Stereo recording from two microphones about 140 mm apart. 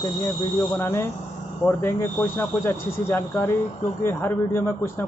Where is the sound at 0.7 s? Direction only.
15° left (ahead or behind).